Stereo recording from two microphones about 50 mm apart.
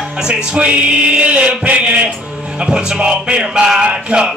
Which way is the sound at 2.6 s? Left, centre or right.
Centre.